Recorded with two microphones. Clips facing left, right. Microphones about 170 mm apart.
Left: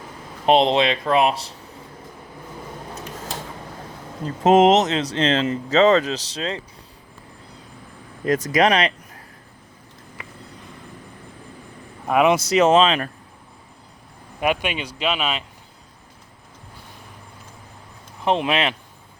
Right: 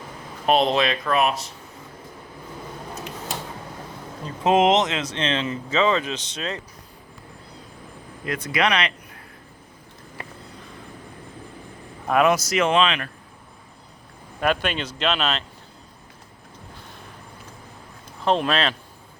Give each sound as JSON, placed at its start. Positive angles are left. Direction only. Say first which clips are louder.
{"t": 0.4, "sound": "speech", "louder": "left 3 dB", "side_deg": 25}
{"t": 4.4, "sound": "speech", "louder": "left 4 dB", "side_deg": 40}
{"t": 8.2, "sound": "speech", "louder": "left 6 dB", "side_deg": 40}
{"t": 12.0, "sound": "speech", "louder": "left 2 dB", "side_deg": 15}
{"t": 12.5, "sound": "speech", "louder": "left 5 dB", "side_deg": 35}
{"t": 14.4, "sound": "speech", "louder": "left 1 dB", "side_deg": 15}
{"t": 18.3, "sound": "speech", "louder": "left 1 dB", "side_deg": 15}